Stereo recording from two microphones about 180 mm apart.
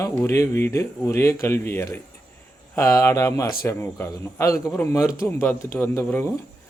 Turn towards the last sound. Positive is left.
turn(degrees=15)  # may be behind; listen again after turning